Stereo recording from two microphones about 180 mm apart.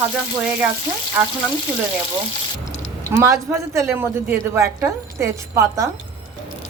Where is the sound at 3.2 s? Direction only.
15° right (ahead or behind).